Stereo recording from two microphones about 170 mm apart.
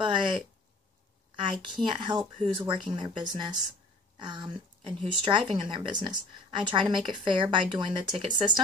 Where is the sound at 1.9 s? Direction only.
25° right (ahead or behind).